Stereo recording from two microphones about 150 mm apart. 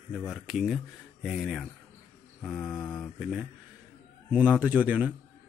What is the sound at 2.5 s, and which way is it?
Mantra, 10° left (ahead or behind).